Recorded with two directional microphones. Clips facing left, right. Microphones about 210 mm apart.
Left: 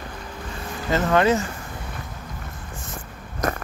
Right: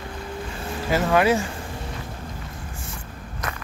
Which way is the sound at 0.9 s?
10° right (ahead or behind).